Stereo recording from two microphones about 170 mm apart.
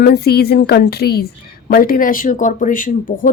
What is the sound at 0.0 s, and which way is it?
Speech, 65° left (ahead or behind).